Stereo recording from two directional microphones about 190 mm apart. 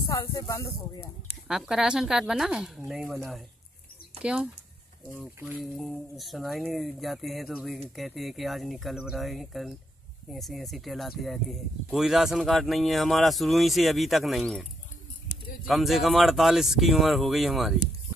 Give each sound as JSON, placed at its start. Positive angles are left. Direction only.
{"t": 0.1, "sound": "speech", "side_deg": 20}
{"t": 1.5, "sound": "a man's voice", "side_deg": -5}